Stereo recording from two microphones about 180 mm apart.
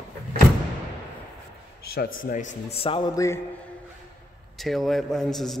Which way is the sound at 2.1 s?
50° left (ahead or behind).